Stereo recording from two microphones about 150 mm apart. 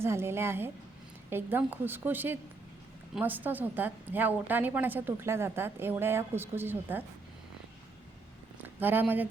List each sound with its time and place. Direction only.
0.0 s a woman's voice: 15° right (ahead or behind)
8.6 s speech: 15° right (ahead or behind)